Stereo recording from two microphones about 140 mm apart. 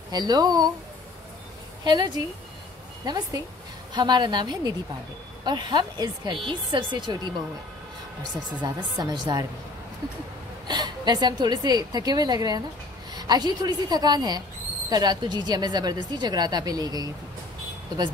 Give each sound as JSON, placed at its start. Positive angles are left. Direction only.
{"t": 0.1, "sound": "speech", "side_deg": -30}
{"t": 1.9, "sound": "speech", "side_deg": -30}
{"t": 8.6, "sound": "speech", "side_deg": -30}
{"t": 10.7, "sound": "speech", "side_deg": -30}